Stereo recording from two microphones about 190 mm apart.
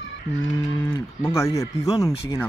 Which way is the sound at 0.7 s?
10° left (ahead or behind).